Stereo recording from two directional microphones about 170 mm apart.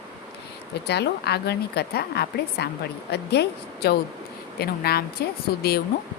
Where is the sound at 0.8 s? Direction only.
80° left.